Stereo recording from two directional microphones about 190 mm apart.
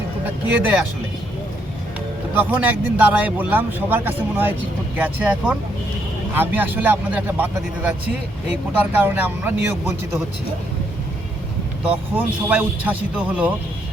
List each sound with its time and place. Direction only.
0.4 s speech: 10° right (ahead or behind)
2.3 s speech: 10° right (ahead or behind)
12.1 s speech: 10° right (ahead or behind)